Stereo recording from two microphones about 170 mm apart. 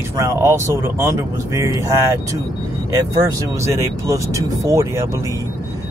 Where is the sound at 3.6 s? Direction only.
15° right (ahead or behind).